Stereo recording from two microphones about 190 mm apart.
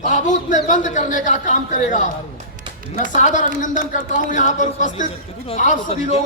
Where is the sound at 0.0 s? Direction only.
40° left (ahead or behind).